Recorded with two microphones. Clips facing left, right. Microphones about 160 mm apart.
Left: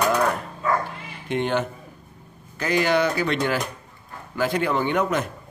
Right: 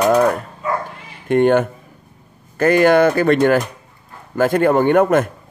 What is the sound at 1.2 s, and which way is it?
A man's voice, 50° right (ahead or behind).